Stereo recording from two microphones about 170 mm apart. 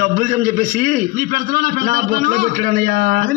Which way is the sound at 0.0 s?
50° right (ahead or behind).